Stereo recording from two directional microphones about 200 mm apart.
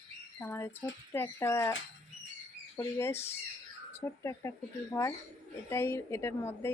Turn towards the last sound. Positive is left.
turn(degrees=10)  # may be behind; listen again after turning